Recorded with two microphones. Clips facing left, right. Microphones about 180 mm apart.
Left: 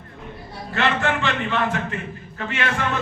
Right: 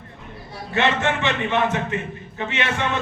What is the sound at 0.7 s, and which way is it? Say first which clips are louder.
A man's voice: right 1 dB; 20° right (ahead or behind).